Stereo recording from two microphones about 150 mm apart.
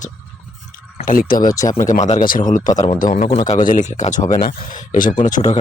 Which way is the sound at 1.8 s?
55° left (ahead or behind).